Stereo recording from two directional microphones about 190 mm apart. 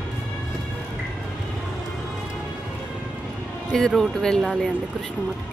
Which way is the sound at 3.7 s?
Centre (ahead or behind).